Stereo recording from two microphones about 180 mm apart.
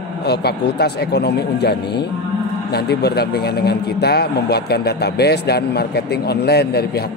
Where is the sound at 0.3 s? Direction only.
65° left (ahead or behind).